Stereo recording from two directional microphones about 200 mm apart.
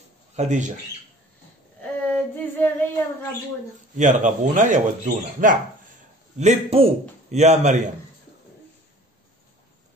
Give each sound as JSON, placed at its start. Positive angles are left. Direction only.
{"t": 0.4, "sound": "speech", "side_deg": -35}
{"t": 2.5, "sound": "a sound", "side_deg": 10}
{"t": 3.9, "sound": "speech", "side_deg": -40}